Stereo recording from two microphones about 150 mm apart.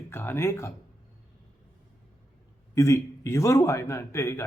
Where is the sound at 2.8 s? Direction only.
20° left (ahead or behind).